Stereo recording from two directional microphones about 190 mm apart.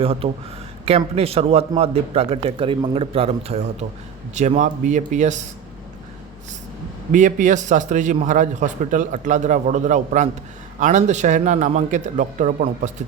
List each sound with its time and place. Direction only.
0.0 s a man's voice: 30° right (ahead or behind)
7.1 s a man's voice: 40° right (ahead or behind)